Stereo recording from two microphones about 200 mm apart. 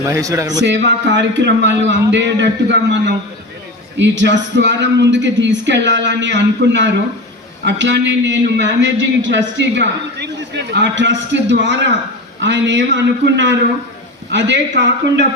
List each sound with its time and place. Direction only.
0.1 s a man's voice: 15° right (ahead or behind)
0.6 s speech: 60° right (ahead or behind)